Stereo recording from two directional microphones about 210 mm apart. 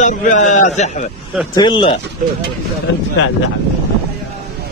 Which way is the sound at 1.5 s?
20° left (ahead or behind).